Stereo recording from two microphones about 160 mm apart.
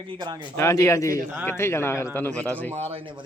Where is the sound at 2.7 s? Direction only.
40° right (ahead or behind).